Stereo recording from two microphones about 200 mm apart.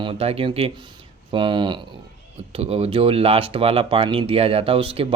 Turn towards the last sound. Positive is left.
turn(degrees=-25)  # may be behind; listen again after turning